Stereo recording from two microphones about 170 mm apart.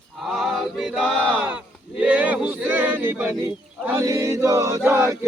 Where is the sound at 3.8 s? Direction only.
20° right (ahead or behind).